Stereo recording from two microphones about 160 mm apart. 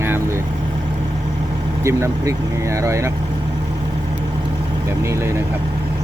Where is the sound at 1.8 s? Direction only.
20° right (ahead or behind).